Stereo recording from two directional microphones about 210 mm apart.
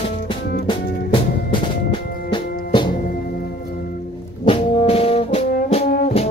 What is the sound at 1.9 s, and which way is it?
Music, 20° left (ahead or behind).